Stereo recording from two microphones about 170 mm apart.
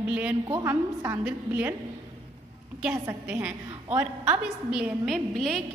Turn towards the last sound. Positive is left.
turn(degrees=0)  # may be behind; listen again after turning